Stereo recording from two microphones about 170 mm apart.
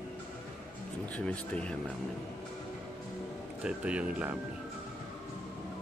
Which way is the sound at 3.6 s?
5° right (ahead or behind).